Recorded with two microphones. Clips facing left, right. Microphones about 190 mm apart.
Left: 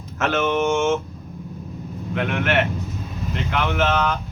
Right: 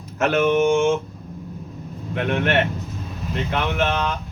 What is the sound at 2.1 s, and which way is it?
Speech, 20° right (ahead or behind).